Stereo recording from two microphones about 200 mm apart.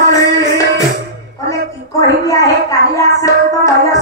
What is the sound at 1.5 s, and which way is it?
Music, 15° left (ahead or behind).